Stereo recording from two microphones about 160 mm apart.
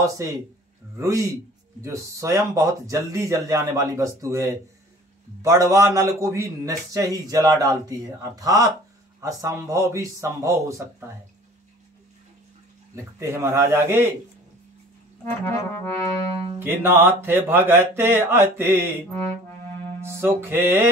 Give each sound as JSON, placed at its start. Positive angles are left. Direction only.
{"t": 0.0, "sound": "a man's voice", "side_deg": -20}
{"t": 12.9, "sound": "speech", "side_deg": -15}
{"t": 15.2, "sound": "music", "side_deg": 15}
{"t": 16.5, "sound": "speech", "side_deg": -15}
{"t": 20.2, "sound": "speech", "side_deg": -15}